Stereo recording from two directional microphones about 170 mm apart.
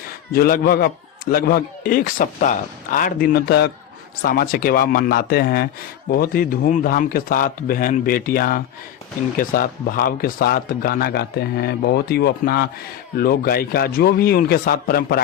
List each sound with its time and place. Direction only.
0.3 s a man's voice: 60° left (ahead or behind)
4.2 s a man's voice: 60° left (ahead or behind)